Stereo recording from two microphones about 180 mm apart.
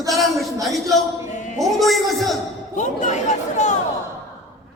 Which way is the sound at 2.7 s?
40° left (ahead or behind).